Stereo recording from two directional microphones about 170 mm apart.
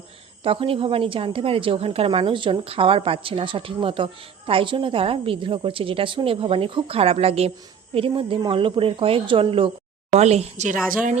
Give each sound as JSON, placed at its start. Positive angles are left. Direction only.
{"t": 0.4, "sound": "a woman's voice", "side_deg": -30}
{"t": 10.8, "sound": "a woman's voice", "side_deg": -50}